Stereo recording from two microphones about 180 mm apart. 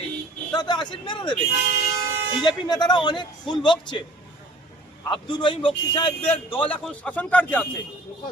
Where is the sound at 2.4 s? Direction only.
25° left (ahead or behind).